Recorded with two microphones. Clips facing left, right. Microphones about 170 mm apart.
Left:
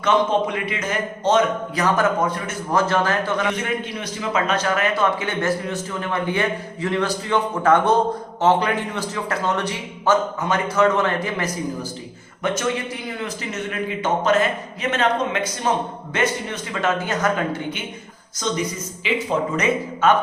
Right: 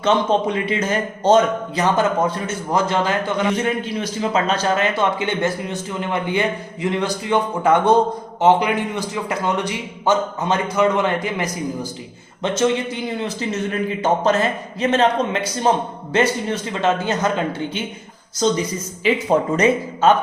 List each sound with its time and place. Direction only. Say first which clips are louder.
0.0 s a man's voice: right 1 dB; 30° right (ahead or behind)
2.7 s a man's voice: even; 15° right (ahead or behind)
4.2 s a man's voice: right 2 dB; 30° right (ahead or behind)
13.5 s a man's voice: right 4 dB; 35° right (ahead or behind)
18.4 s a man's voice: right 5 dB; 35° right (ahead or behind)